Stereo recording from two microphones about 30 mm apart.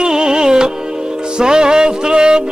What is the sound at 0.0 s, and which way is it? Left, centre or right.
Music, right.